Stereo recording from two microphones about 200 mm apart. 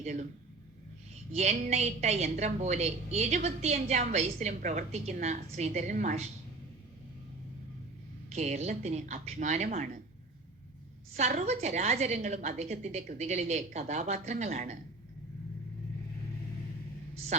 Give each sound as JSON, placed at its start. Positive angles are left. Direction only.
{"t": 0.0, "sound": "speech", "side_deg": -35}
{"t": 1.3, "sound": "a woman's voice", "side_deg": -35}
{"t": 8.3, "sound": "a woman's voice", "side_deg": -35}
{"t": 11.1, "sound": "a woman's voice", "side_deg": -35}